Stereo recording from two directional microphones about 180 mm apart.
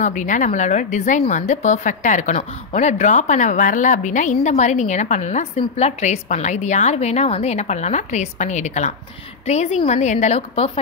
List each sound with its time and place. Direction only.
0.0 s a woman's voice: 45° left (ahead or behind)